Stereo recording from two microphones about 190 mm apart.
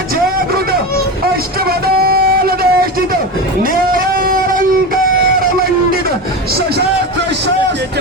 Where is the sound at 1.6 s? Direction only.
55° right (ahead or behind).